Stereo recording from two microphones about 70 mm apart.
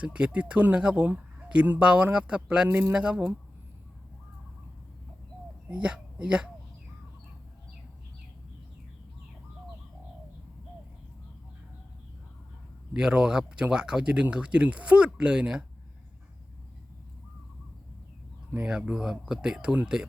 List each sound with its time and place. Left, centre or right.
0.0 s speech: centre
2.6 s speech: right
2.9 s speech: centre
5.7 s speech: centre
12.9 s speech: centre
18.6 s speech: centre